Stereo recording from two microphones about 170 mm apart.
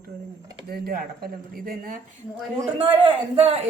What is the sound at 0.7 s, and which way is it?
Speech, 60° right (ahead or behind).